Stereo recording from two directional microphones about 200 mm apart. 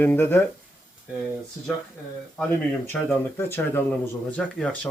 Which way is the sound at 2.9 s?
10° left (ahead or behind).